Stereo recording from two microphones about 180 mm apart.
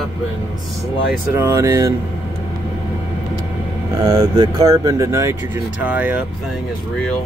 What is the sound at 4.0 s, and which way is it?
Speech, 20° right (ahead or behind).